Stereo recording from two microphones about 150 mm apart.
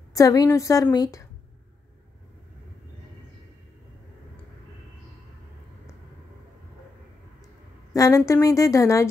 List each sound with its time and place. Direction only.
0.1 s speech: 25° left (ahead or behind)
7.9 s a sound: 25° left (ahead or behind)
8.3 s speech: 20° left (ahead or behind)